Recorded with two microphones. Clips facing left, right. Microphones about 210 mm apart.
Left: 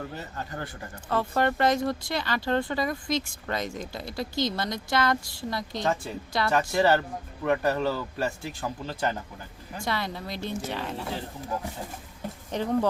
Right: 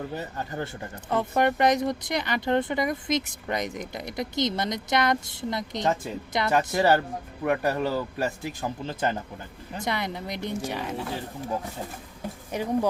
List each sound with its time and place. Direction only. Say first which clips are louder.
0.2 s speech: right 4 dB; 20° right (ahead or behind)
12.5 s speech: even; 10° right (ahead or behind)